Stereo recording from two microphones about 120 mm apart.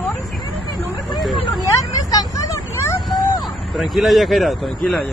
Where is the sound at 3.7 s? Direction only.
Centre (ahead or behind).